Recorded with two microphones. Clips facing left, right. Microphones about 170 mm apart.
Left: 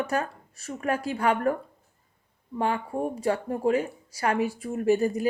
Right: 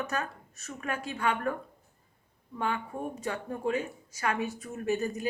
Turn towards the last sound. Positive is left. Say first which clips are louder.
# left 7 dB
turn(degrees=35)  # may be behind; listen again after turning